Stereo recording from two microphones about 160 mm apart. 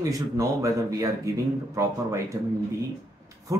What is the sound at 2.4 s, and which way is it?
Speech, 25° right (ahead or behind).